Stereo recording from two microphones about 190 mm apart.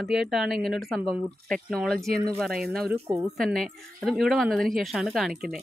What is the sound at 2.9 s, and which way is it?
Speech, 15° right (ahead or behind).